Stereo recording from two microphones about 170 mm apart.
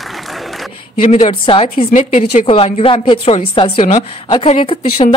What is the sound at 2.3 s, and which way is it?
A woman's voice, 35° left (ahead or behind).